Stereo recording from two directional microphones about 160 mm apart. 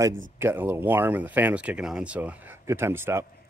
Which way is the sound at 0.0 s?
15° right (ahead or behind).